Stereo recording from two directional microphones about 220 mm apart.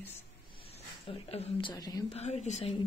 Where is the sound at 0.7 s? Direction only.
25° left (ahead or behind).